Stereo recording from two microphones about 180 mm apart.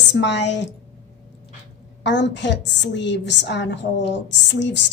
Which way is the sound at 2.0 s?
75° left (ahead or behind).